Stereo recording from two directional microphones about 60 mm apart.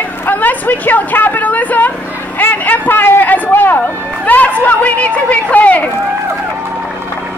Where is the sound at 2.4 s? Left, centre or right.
Left.